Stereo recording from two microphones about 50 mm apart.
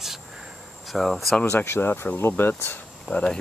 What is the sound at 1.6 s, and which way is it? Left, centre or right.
Speech, left.